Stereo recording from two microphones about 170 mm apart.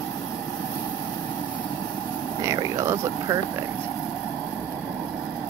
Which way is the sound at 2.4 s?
20° right (ahead or behind).